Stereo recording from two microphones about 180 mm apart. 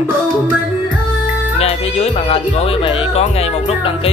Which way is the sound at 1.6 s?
35° left (ahead or behind).